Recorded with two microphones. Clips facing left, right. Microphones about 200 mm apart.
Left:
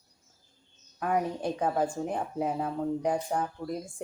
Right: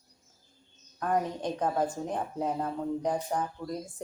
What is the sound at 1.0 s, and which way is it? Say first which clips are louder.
Speech: left 1 dB; 5° left (ahead or behind).